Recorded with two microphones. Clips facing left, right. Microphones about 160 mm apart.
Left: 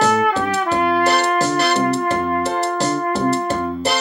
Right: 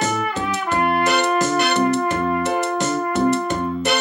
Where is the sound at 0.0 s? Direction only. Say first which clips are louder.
Left 6 dB; 70° left (ahead or behind).